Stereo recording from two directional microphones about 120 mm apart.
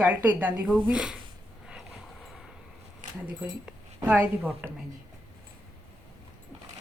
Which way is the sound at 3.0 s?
90° right.